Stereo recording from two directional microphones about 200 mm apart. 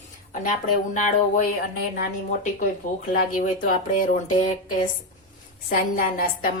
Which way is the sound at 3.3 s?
40° left (ahead or behind).